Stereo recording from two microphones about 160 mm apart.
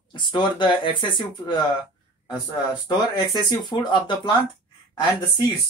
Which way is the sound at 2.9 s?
25° left (ahead or behind).